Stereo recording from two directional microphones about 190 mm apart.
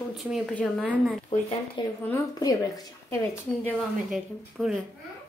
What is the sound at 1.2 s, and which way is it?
Speech, 25° left (ahead or behind).